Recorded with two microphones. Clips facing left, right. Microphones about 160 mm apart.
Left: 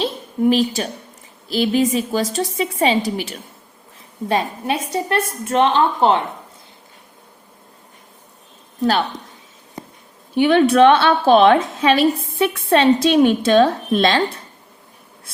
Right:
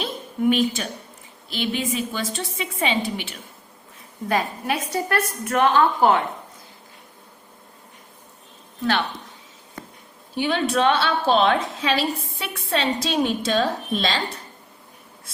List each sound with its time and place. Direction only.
0.0 s a woman's voice: 35° left (ahead or behind)
4.3 s a woman's voice: 25° left (ahead or behind)
10.3 s a woman's voice: 65° left (ahead or behind)